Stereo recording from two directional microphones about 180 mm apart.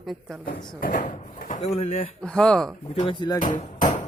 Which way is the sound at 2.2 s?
5° left (ahead or behind).